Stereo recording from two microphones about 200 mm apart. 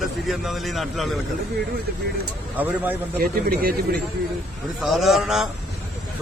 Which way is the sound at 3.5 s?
50° right (ahead or behind).